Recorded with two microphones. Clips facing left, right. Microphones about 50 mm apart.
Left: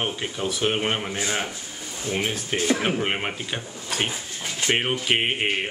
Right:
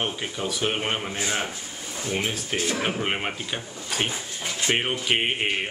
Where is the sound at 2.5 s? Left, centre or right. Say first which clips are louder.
Left 5 dB; left.